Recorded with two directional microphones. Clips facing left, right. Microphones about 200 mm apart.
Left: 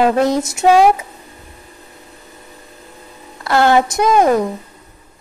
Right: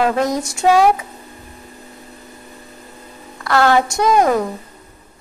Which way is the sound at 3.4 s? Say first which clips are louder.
Left 2 dB; 25° left (ahead or behind).